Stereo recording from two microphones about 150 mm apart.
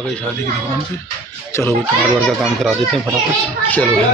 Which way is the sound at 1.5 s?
20° left (ahead or behind).